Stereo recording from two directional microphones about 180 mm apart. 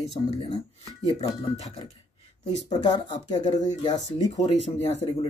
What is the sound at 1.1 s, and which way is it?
Speech, 35° left (ahead or behind).